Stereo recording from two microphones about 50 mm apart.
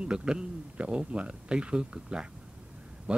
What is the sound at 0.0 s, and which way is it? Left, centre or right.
A man's voice, centre.